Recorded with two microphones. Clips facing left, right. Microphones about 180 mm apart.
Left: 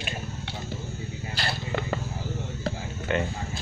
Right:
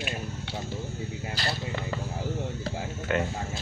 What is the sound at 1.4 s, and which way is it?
Speech, 60° left (ahead or behind).